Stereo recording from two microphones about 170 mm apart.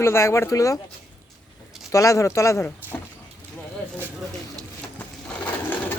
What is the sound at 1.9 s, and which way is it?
Speech, 20° left (ahead or behind).